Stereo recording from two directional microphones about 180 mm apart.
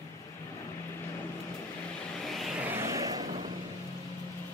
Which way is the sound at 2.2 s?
Centre (ahead or behind).